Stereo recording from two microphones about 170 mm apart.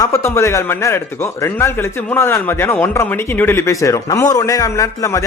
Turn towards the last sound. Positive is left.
turn(degrees=20)  # may be behind; listen again after turning